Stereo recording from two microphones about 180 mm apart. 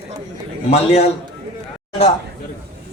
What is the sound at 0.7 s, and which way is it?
Speech, 35° left (ahead or behind).